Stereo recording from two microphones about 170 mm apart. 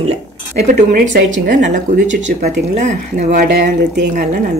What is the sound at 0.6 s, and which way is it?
Speech, 45° right (ahead or behind).